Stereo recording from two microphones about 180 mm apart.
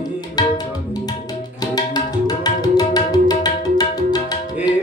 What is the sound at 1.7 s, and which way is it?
Tabla, 20° left (ahead or behind).